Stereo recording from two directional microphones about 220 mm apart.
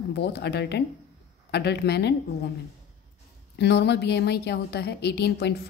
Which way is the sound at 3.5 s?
50° left (ahead or behind).